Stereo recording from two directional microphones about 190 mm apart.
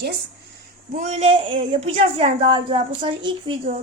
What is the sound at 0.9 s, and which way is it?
A woman's voice, 40° right (ahead or behind).